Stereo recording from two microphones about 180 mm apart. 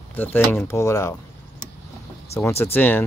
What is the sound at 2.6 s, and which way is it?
Speech, 10° left (ahead or behind).